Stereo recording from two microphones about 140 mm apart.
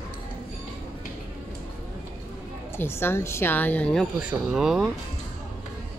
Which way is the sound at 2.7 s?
15° left (ahead or behind).